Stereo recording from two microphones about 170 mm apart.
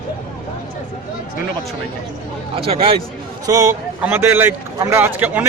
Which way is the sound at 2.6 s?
35° right (ahead or behind).